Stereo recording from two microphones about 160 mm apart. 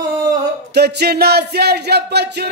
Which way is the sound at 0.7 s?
90° right.